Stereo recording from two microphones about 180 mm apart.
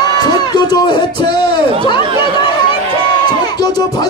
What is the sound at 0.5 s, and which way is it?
Speech, 25° left (ahead or behind).